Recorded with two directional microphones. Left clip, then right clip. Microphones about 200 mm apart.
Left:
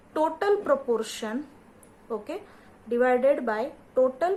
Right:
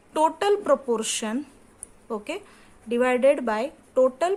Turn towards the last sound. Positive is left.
turn(degrees=-50)  # may be behind; listen again after turning